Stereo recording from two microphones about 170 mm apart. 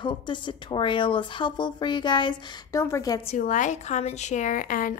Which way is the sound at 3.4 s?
50° left (ahead or behind).